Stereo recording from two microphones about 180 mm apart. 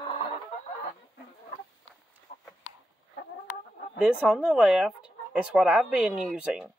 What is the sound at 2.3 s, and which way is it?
Chicken, 45° left (ahead or behind).